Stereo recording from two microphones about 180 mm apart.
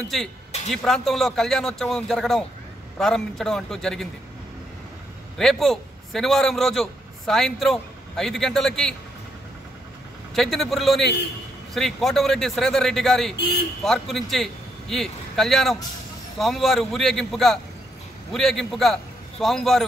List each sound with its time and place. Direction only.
0.7 s a man's voice: centre (ahead or behind)
5.4 s a man's voice: centre (ahead or behind)
10.3 s a man's voice: centre (ahead or behind)
13.4 s speech: 65° left (ahead or behind)
13.8 s a man's voice: centre (ahead or behind)